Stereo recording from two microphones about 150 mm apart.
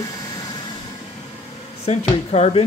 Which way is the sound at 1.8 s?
45° left (ahead or behind).